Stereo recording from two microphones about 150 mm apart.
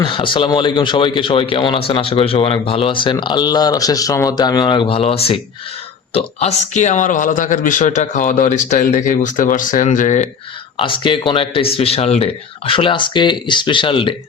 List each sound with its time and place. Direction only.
0.0 s speech: 35° left (ahead or behind); by 10.2 s 55° left (ahead or behind)
10.8 s speech: 35° left (ahead or behind)